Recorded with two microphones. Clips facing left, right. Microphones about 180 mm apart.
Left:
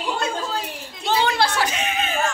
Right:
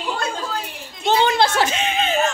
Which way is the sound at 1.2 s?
25° right (ahead or behind).